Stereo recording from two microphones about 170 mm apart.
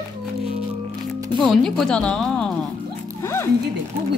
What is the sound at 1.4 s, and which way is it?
A woman's voice, 5° left (ahead or behind).